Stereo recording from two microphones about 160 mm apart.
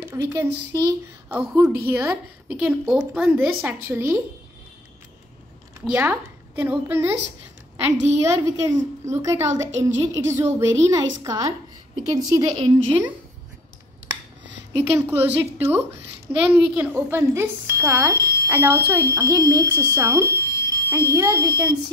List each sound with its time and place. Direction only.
0.0 s a child's voice: 20° right (ahead or behind)
5.9 s a woman's voice: 10° right (ahead or behind)
8.2 s speech: 20° right (ahead or behind)
14.8 s a woman's voice: 15° right (ahead or behind)